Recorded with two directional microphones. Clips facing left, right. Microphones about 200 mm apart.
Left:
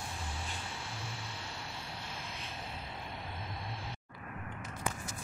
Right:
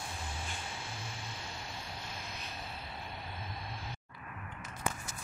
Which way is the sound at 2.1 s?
30° left (ahead or behind).